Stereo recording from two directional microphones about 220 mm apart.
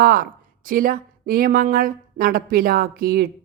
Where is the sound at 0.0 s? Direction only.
40° right (ahead or behind).